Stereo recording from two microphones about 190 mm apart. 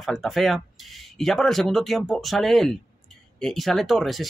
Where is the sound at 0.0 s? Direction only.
Centre (ahead or behind).